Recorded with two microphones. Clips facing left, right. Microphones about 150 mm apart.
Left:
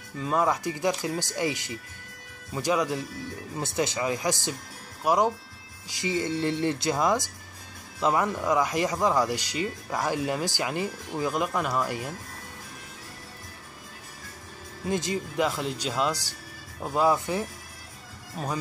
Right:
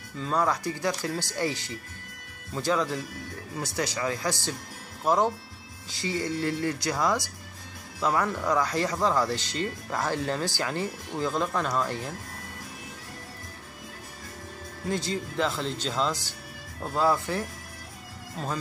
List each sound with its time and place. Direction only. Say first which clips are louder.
0.2 s speech: left 1 dB; 20° left (ahead or behind)
14.9 s speech: left 2 dB; 20° left (ahead or behind)